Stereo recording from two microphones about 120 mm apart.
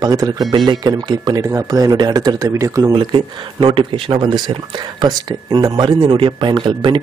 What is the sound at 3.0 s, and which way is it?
Speech, 45° right (ahead or behind).